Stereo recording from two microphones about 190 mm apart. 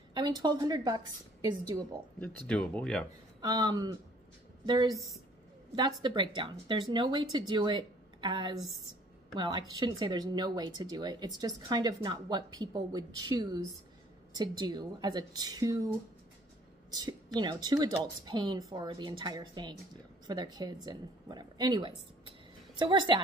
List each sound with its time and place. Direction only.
0.1 s speech: 20° right (ahead or behind)
2.1 s speech: 5° left (ahead or behind)
3.3 s a woman's voice: 20° right (ahead or behind)